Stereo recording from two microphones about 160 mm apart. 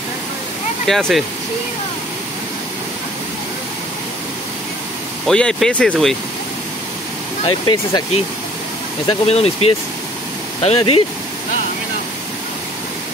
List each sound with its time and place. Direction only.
0.8 s speech: centre (ahead or behind)
5.2 s speech: 5° left (ahead or behind)
7.4 s speech: 25° left (ahead or behind)
9.0 s speech: 40° left (ahead or behind)